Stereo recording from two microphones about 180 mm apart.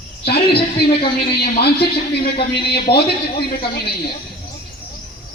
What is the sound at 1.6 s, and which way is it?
Speech, 65° left (ahead or behind).